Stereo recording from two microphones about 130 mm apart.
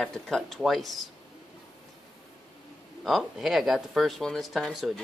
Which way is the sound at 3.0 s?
Centre (ahead or behind).